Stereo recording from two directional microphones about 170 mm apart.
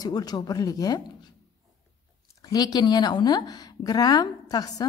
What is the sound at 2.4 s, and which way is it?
Speech, 25° left (ahead or behind).